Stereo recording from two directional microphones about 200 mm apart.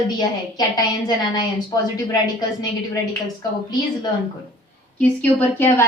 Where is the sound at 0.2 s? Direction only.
20° left (ahead or behind).